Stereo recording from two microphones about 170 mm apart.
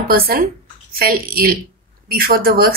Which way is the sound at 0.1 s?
60° right (ahead or behind).